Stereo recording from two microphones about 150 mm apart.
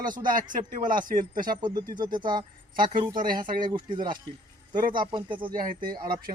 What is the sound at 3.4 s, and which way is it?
Speech, 65° right (ahead or behind).